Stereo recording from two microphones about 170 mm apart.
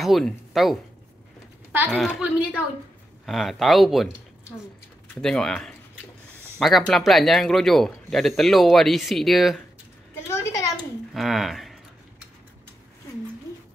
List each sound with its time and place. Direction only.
0.0 s speech: centre (ahead or behind)
1.7 s speech: 10° right (ahead or behind)
2.0 s speech: centre (ahead or behind)
5.1 s speech: 5° left (ahead or behind)
10.3 s a sound: 15° left (ahead or behind)
11.1 s speech: centre (ahead or behind)